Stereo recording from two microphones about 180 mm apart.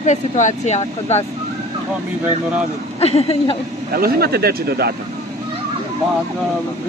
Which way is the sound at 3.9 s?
60° right (ahead or behind).